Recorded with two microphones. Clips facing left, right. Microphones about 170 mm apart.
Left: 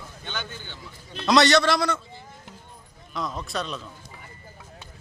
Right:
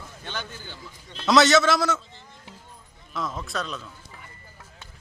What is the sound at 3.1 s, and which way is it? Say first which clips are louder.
Speech: even; centre (ahead or behind).